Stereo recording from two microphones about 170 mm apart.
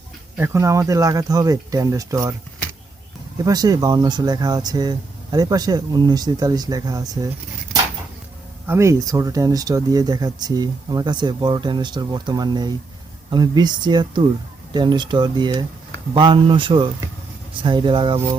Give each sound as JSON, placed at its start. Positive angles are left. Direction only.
{"t": 0.3, "sound": "speech", "side_deg": -15}
{"t": 3.3, "sound": "speech", "side_deg": -25}
{"t": 8.6, "sound": "speech", "side_deg": -15}